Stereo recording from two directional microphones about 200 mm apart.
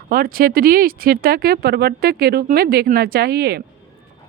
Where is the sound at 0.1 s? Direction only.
45° right (ahead or behind).